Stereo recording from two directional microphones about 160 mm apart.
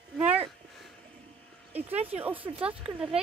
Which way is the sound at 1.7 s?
10° right (ahead or behind).